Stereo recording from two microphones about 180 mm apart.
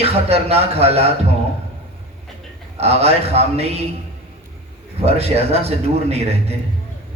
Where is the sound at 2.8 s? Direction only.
35° right (ahead or behind).